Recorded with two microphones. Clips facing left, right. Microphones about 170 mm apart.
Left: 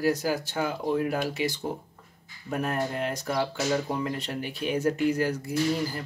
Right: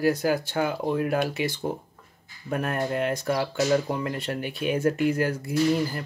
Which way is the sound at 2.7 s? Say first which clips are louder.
Right 4 dB; 60° right (ahead or behind).